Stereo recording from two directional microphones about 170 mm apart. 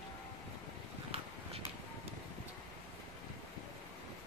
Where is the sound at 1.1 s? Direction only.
35° right (ahead or behind).